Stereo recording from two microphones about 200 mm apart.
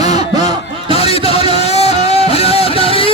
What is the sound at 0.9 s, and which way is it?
Music, 30° left (ahead or behind).